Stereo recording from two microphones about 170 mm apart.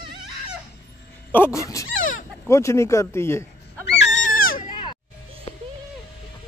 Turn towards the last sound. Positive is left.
turn(degrees=25)  # may be behind; listen again after turning